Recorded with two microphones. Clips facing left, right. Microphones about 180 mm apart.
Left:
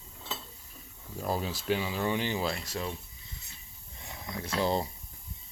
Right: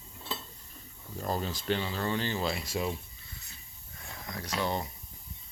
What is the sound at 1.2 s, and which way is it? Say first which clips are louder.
Speech: left 1 dB; 5° left (ahead or behind).